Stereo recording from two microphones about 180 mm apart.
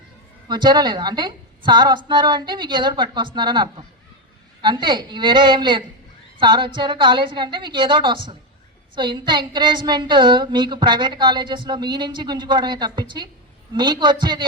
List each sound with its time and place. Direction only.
0.4 s a woman's voice: 25° right (ahead or behind)